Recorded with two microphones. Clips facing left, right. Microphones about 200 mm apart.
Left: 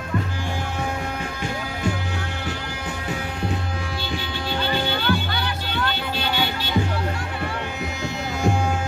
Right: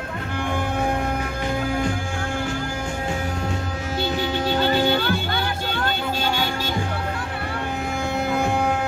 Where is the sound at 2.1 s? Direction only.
50° right (ahead or behind).